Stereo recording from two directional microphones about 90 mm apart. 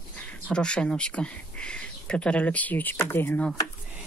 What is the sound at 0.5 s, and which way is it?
Speech, 10° left (ahead or behind).